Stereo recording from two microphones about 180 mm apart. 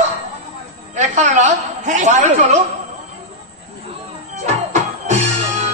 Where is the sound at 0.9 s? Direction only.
40° right (ahead or behind).